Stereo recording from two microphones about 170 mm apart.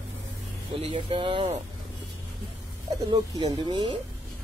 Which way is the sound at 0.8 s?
30° right (ahead or behind).